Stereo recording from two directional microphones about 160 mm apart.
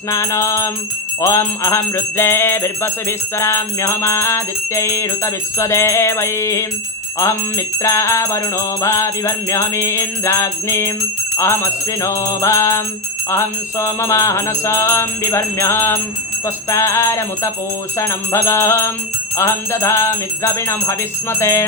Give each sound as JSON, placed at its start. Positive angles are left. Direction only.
{"t": 0.1, "sound": "music", "side_deg": 20}